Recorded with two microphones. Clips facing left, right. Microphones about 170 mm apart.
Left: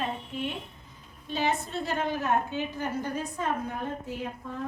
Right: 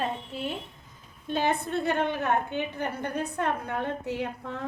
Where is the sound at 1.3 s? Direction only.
55° right (ahead or behind); by 4.6 s 75° right (ahead or behind).